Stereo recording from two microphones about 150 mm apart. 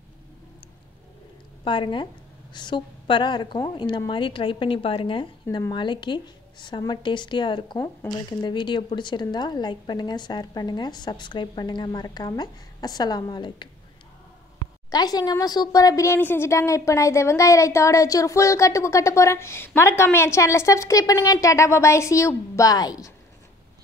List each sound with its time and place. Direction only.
1.6 s a woman's voice: 35° left (ahead or behind)
14.9 s a woman's voice: 25° left (ahead or behind)